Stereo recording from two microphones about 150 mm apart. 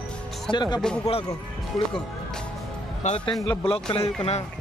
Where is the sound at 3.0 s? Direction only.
50° left (ahead or behind).